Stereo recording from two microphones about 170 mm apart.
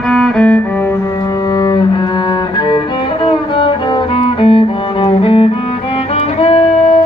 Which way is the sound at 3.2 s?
30° left (ahead or behind).